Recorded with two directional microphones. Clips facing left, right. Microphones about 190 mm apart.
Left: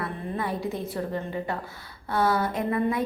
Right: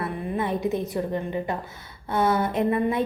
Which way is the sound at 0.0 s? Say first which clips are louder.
Right 3 dB; 20° right (ahead or behind).